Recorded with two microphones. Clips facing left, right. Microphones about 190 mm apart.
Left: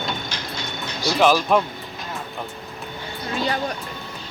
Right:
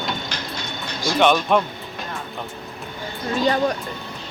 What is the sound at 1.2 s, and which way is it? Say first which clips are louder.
Speech: even; centre (ahead or behind).